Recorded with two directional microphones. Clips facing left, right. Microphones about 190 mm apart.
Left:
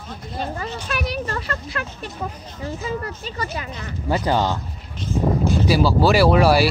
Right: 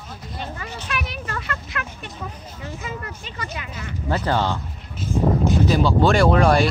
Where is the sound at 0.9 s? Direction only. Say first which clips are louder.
Left 4 dB; 35° left (ahead or behind).